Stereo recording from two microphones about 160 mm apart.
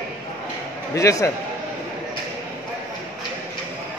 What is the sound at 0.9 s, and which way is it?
Speech, 20° left (ahead or behind).